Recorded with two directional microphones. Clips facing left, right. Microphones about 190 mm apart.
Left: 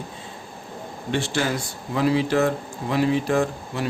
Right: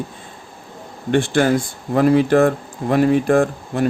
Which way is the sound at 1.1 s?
55° right (ahead or behind).